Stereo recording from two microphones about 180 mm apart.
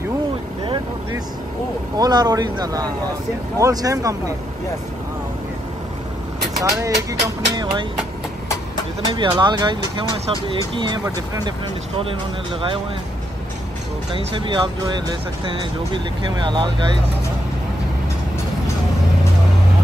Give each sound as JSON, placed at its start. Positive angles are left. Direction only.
{"t": 2.0, "sound": "speech", "side_deg": -20}
{"t": 6.6, "sound": "speech", "side_deg": -20}
{"t": 9.1, "sound": "speech", "side_deg": -25}
{"t": 14.1, "sound": "speech", "side_deg": -25}